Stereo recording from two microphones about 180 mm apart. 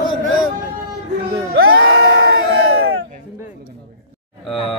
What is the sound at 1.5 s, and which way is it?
Crowd, 90° right.